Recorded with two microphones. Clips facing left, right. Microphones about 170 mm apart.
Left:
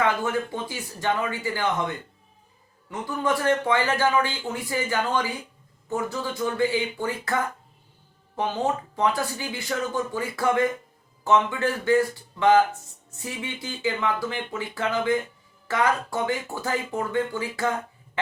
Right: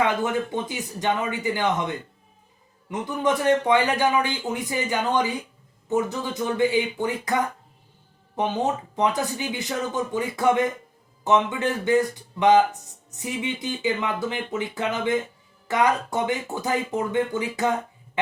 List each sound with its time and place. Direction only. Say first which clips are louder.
0.5 s speech: right 3 dB; 20° right (ahead or behind)